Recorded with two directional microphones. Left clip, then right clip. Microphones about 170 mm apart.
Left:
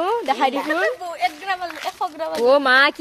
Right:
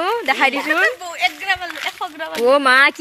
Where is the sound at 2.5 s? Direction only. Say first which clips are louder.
Right 2 dB; 20° right (ahead or behind).